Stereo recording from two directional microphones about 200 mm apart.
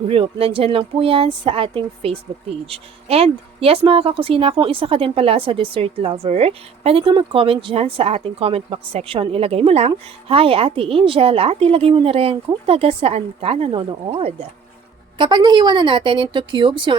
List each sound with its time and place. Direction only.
0.1 s speech: 30° right (ahead or behind)